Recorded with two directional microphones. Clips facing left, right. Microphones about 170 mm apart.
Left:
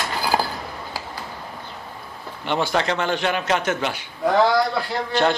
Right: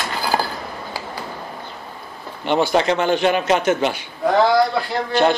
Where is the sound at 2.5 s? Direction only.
15° right (ahead or behind).